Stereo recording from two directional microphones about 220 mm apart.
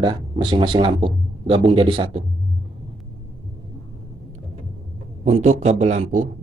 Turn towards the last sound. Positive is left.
turn(degrees=-35)  # may be behind; listen again after turning